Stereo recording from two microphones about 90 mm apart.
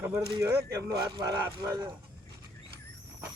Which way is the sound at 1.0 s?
40° right (ahead or behind).